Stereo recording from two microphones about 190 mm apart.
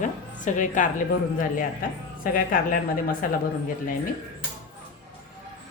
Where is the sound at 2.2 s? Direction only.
45° left (ahead or behind).